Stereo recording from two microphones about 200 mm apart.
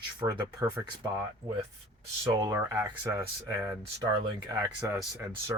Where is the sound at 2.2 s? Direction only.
15° right (ahead or behind).